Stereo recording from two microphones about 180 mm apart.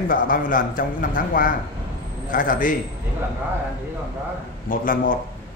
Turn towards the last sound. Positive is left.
turn(degrees=50)  # may be behind; listen again after turning